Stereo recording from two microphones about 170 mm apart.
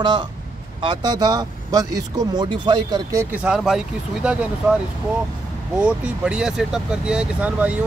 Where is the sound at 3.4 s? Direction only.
5° right (ahead or behind).